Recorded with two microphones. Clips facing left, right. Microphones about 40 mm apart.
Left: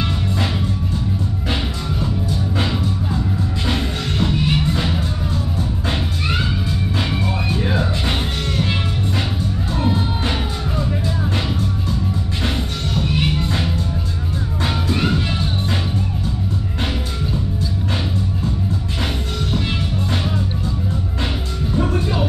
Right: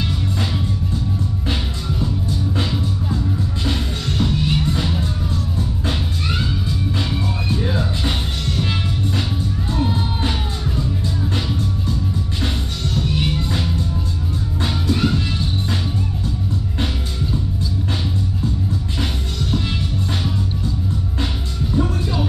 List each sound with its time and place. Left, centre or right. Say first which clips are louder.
3.6 s music: left 3 dB; centre
9.8 s music: left 2 dB; centre
12.9 s music: left 1 dB; centre
21.7 s music: left 1 dB; left